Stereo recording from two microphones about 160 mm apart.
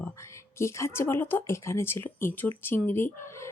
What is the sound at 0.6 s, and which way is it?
Speech, 15° left (ahead or behind).